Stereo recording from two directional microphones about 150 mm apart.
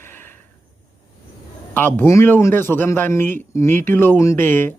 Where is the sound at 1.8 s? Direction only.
15° left (ahead or behind).